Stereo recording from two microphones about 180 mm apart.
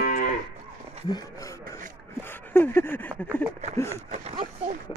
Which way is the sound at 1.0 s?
20° left (ahead or behind).